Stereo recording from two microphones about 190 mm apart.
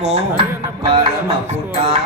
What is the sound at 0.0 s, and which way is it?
Music, 35° right (ahead or behind).